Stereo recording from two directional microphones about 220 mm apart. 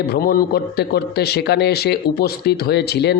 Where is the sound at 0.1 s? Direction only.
45° left (ahead or behind).